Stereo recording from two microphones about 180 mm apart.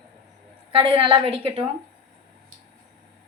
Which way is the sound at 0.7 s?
30° right (ahead or behind).